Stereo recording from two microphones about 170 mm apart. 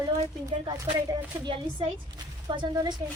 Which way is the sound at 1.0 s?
25° right (ahead or behind).